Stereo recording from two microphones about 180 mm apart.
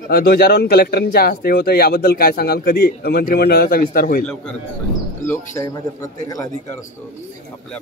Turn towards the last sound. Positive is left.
turn(degrees=20)  # may be behind; listen again after turning